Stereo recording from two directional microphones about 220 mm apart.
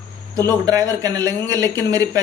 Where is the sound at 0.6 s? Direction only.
15° right (ahead or behind).